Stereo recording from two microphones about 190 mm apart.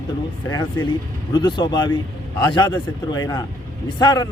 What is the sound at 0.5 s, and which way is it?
A man's voice, 20° left (ahead or behind).